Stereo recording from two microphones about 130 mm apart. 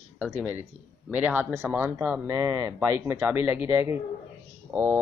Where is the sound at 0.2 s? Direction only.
10° right (ahead or behind).